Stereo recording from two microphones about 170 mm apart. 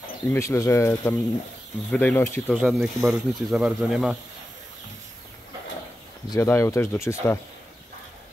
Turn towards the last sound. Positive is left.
turn(degrees=15)  # may be behind; listen again after turning